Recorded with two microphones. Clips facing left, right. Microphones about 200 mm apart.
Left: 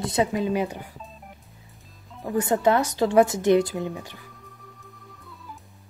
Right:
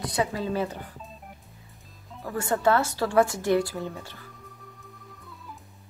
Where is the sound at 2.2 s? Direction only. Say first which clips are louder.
Left 4 dB; 20° left (ahead or behind).